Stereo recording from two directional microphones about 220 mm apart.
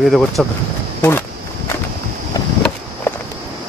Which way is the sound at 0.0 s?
Centre (ahead or behind).